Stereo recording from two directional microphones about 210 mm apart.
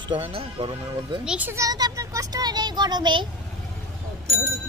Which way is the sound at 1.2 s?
5° right (ahead or behind).